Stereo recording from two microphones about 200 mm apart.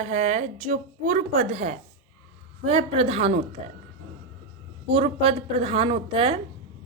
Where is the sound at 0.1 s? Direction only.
35° right (ahead or behind).